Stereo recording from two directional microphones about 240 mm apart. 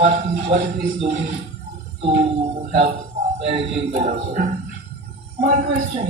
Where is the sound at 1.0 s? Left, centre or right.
Right.